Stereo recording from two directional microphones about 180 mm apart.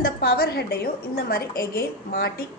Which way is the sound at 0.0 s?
60° left (ahead or behind).